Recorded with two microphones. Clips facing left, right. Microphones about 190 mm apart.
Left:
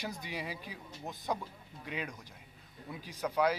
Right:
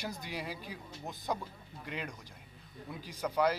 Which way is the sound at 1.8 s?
5° left (ahead or behind).